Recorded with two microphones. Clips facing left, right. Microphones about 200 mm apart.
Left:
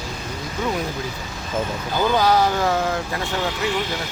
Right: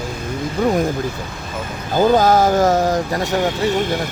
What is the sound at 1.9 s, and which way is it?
Speech, 45° right (ahead or behind).